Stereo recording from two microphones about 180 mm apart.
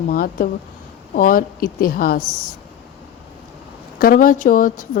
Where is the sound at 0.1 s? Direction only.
55° left (ahead or behind).